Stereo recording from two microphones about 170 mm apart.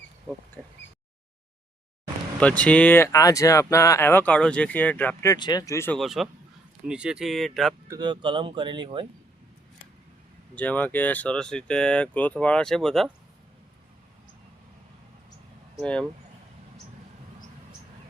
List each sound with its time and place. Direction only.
0.6 s speech: 5° left (ahead or behind)
2.4 s speech: 5° left (ahead or behind)
6.0 s speech: centre (ahead or behind)
7.9 s speech: 25° right (ahead or behind)
10.5 s speech: 10° left (ahead or behind)
15.8 s speech: 5° left (ahead or behind)